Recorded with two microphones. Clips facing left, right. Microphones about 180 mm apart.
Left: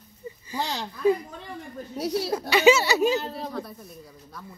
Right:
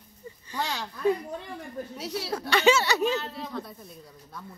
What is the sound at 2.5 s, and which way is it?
A woman's voice, 10° left (ahead or behind).